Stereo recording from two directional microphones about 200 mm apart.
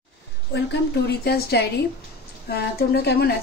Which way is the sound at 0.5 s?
55° left (ahead or behind).